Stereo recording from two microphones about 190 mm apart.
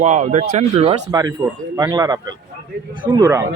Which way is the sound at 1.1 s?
20° right (ahead or behind).